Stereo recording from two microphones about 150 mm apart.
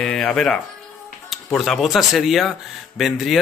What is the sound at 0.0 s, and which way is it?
Speech, 5° left (ahead or behind).